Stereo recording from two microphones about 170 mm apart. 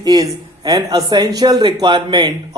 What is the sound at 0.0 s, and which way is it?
A man's voice, 25° right (ahead or behind).